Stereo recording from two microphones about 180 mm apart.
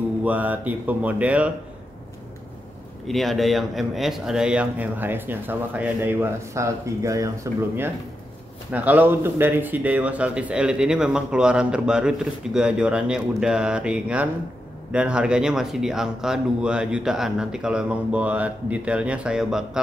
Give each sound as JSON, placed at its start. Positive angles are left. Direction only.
{"t": 0.2, "sound": "speech", "side_deg": -10}
{"t": 3.1, "sound": "speech", "side_deg": 0}
{"t": 8.7, "sound": "speech", "side_deg": -10}